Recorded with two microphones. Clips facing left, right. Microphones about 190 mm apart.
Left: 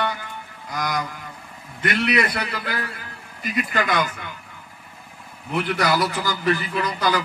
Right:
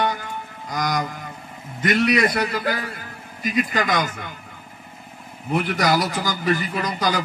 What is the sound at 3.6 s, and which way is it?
Speech, 60° left (ahead or behind).